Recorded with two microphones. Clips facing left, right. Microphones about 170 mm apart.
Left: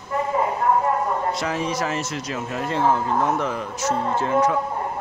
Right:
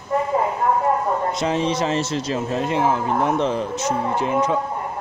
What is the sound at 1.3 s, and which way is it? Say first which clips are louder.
Speech: right 4 dB; 25° right (ahead or behind).